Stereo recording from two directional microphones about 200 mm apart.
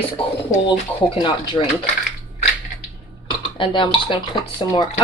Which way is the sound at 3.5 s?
25° left (ahead or behind).